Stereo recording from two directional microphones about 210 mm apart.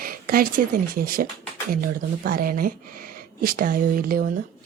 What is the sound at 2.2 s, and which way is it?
A woman's voice, 40° right (ahead or behind).